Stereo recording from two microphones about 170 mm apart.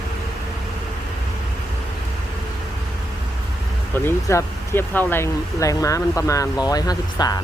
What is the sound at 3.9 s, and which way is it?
Speech, 15° left (ahead or behind).